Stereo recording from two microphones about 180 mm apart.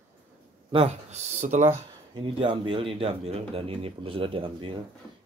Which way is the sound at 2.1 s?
25° right (ahead or behind).